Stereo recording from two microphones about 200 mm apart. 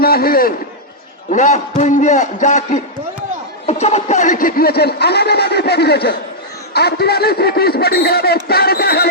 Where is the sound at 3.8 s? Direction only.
35° left (ahead or behind).